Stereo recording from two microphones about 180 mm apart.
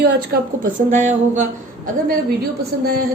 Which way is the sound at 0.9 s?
45° right (ahead or behind).